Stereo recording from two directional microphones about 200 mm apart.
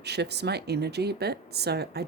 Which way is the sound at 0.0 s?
55° right (ahead or behind).